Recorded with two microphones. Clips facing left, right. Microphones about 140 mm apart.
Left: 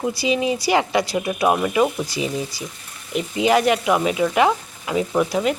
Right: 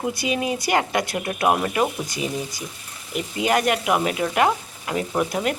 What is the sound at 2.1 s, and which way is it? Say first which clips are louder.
Speech: left 3 dB; 50° right (ahead or behind).